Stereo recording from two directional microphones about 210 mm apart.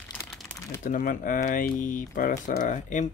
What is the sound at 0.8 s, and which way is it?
Speech, 40° left (ahead or behind).